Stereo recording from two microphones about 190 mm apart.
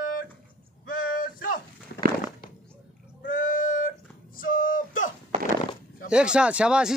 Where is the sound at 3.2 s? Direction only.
45° left (ahead or behind).